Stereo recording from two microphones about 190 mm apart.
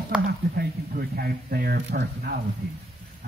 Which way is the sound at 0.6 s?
55° right (ahead or behind).